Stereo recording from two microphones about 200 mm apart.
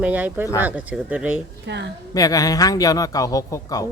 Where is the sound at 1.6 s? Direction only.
60° right (ahead or behind).